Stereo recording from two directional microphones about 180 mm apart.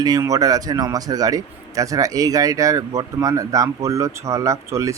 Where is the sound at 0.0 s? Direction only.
20° right (ahead or behind).